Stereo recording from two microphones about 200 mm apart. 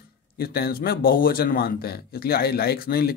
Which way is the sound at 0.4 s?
50° left (ahead or behind).